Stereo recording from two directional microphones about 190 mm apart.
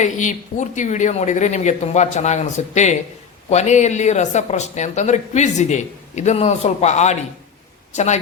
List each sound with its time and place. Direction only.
0.0 s speech: 40° left (ahead or behind)